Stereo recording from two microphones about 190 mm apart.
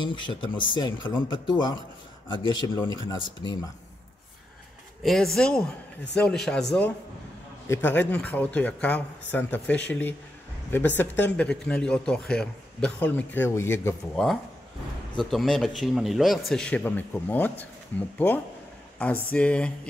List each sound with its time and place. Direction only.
0.0 s speech: 25° left (ahead or behind)
5.0 s a man's voice: centre (ahead or behind)
15.3 s a man's voice: centre (ahead or behind)